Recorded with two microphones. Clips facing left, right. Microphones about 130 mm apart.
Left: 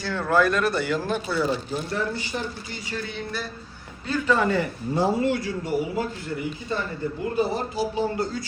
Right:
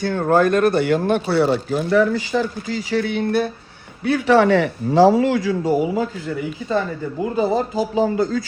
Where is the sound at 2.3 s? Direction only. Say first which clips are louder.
Right 10 dB; 90° right; by 3.5 s 60° right (ahead or behind).